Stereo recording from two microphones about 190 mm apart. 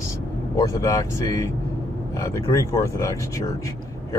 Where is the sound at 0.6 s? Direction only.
20° left (ahead or behind).